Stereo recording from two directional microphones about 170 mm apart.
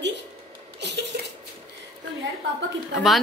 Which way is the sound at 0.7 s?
90° right.